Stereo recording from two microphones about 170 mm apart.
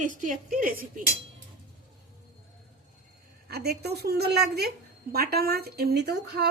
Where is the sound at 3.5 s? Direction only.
70° right (ahead or behind).